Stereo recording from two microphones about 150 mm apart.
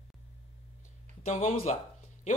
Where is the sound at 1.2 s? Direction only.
50° left (ahead or behind).